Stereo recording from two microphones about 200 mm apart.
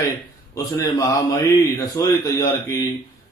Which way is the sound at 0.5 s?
15° left (ahead or behind).